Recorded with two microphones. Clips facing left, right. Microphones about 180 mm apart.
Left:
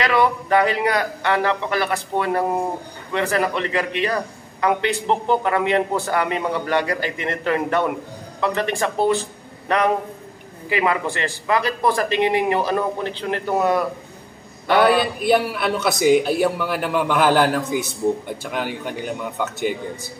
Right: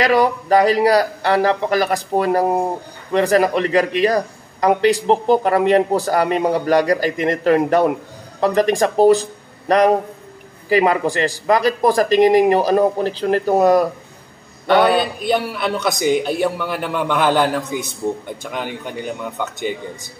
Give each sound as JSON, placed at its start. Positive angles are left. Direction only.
{"t": 0.0, "sound": "a man's voice", "side_deg": -40}
{"t": 14.7, "sound": "a man's voice", "side_deg": 5}